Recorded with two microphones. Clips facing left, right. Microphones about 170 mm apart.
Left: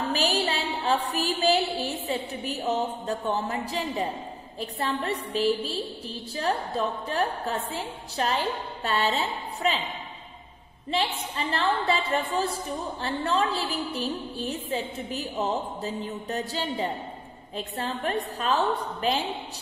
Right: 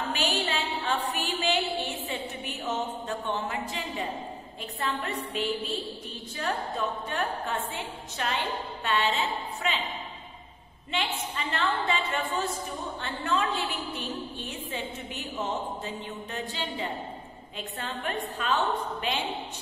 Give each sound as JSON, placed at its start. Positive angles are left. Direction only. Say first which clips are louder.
{"t": 0.1, "sound": "a woman's voice", "louder": "left 3 dB", "side_deg": 40}
{"t": 10.9, "sound": "a woman's voice", "louder": "left 4 dB", "side_deg": 35}